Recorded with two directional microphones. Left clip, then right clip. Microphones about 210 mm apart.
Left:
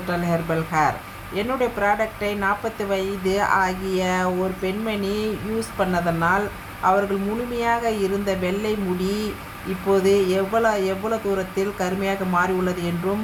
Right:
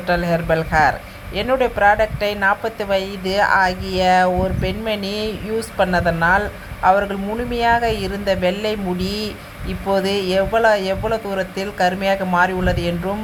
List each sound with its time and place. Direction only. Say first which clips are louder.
0.1 s a woman's voice: right 6 dB; 15° right (ahead or behind)
7.5 s a woman's voice: right 6 dB; 20° right (ahead or behind)